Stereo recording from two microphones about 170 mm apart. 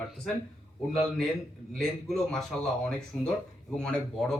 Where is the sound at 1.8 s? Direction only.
Centre (ahead or behind).